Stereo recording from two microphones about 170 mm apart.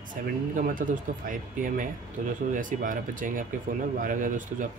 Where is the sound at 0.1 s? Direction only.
50° right (ahead or behind).